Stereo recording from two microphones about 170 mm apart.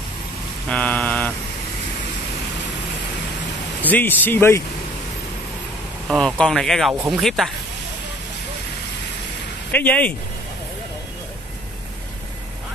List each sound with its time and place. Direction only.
0.7 s a sound: 10° left (ahead or behind)
3.8 s speech: 10° left (ahead or behind)
6.0 s speech: 5° left (ahead or behind)
9.7 s speech: 10° left (ahead or behind)